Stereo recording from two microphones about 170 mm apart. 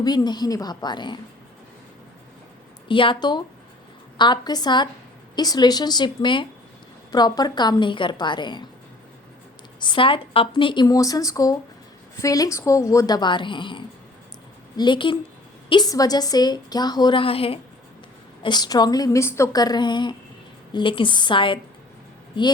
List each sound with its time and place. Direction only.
0.0 s a woman's voice: 25° left (ahead or behind)
2.9 s a woman's voice: 30° left (ahead or behind)
9.8 s a woman's voice: 30° left (ahead or behind)